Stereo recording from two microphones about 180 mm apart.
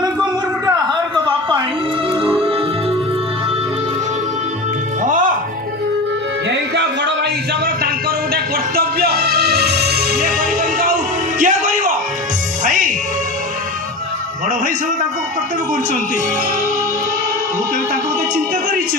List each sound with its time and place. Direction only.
0.0 s a sound: 20° right (ahead or behind)
6.5 s music: 75° right (ahead or behind)
8.3 s music: 55° right (ahead or behind)